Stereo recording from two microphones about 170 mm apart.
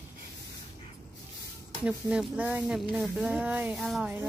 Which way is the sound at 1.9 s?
5° right (ahead or behind).